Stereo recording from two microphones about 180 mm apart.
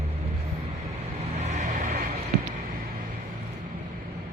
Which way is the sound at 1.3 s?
40° right (ahead or behind).